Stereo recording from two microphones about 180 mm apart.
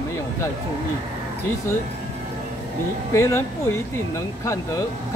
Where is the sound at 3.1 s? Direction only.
15° left (ahead or behind).